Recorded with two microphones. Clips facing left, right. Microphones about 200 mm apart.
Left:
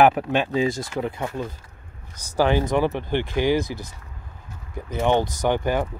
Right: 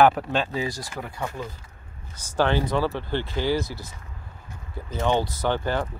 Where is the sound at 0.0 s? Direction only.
15° left (ahead or behind).